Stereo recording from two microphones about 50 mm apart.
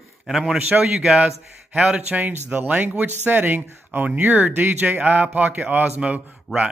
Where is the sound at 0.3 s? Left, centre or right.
Centre.